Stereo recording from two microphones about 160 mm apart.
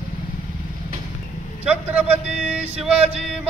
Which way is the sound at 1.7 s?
10° right (ahead or behind).